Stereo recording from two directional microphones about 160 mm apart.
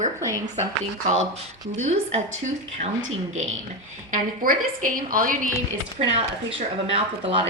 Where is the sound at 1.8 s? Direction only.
45° right (ahead or behind).